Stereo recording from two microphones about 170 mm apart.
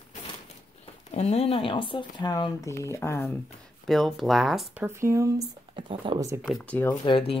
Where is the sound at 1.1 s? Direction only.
40° left (ahead or behind); by 3.4 s 15° left (ahead or behind).